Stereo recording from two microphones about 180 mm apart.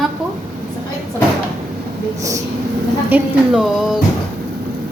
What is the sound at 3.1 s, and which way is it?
Speech, 5° right (ahead or behind).